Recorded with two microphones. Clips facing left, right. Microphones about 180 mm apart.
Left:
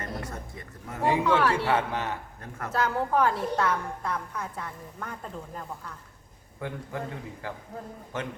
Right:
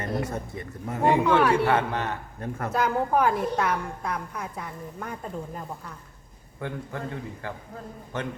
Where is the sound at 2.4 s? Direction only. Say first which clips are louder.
Right 6 dB; 30° right (ahead or behind).